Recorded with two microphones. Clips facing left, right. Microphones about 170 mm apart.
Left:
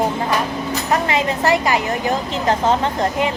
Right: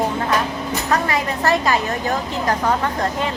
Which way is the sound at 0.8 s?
20° left (ahead or behind).